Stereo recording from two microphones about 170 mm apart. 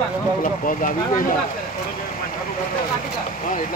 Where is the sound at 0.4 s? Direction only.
50° left (ahead or behind).